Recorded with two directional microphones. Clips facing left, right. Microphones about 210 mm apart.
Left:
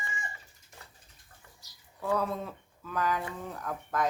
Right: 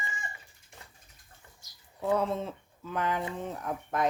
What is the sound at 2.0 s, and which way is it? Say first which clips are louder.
Speech: right 2 dB; 25° right (ahead or behind).